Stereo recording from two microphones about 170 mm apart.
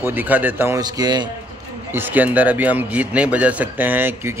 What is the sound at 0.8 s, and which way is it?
Speech, 25° right (ahead or behind).